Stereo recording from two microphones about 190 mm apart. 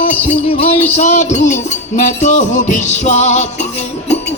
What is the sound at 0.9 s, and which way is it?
Music, 35° left (ahead or behind).